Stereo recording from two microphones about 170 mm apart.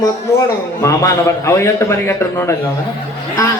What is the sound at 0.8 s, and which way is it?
A man's voice, 15° left (ahead or behind).